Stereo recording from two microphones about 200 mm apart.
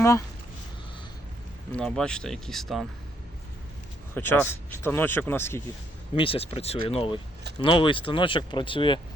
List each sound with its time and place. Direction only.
1.7 s speech: 5° left (ahead or behind)
4.1 s speech: 10° left (ahead or behind)
6.1 s speech: 25° left (ahead or behind)